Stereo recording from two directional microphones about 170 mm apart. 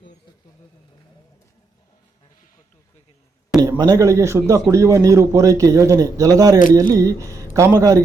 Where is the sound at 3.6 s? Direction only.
25° right (ahead or behind).